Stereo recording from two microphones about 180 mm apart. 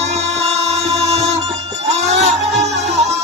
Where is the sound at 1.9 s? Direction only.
40° right (ahead or behind).